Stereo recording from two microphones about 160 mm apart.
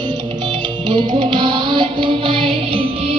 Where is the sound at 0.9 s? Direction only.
30° right (ahead or behind).